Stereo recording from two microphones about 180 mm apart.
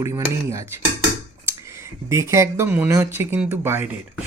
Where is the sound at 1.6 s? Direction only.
15° right (ahead or behind).